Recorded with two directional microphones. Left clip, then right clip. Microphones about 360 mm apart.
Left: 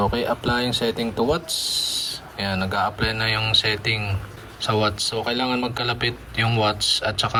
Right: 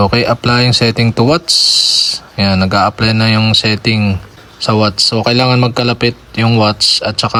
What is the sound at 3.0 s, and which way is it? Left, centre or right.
Speech, centre.